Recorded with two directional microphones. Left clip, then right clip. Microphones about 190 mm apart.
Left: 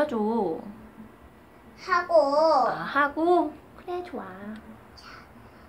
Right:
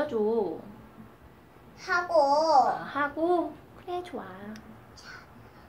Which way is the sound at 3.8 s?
Centre (ahead or behind).